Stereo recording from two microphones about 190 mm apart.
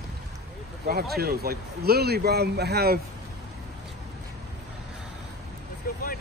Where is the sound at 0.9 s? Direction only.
55° right (ahead or behind).